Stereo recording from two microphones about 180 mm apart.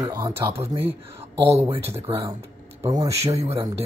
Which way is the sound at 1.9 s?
15° right (ahead or behind).